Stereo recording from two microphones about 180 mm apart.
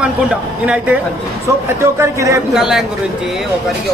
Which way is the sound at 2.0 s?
15° right (ahead or behind).